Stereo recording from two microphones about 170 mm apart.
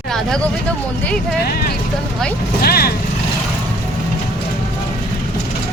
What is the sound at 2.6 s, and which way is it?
Speech, 65° left (ahead or behind).